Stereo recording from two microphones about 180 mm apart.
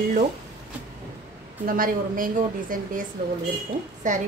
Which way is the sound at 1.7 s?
50° right (ahead or behind).